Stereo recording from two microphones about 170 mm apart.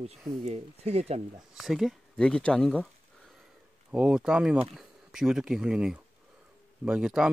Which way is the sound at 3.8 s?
5° right (ahead or behind).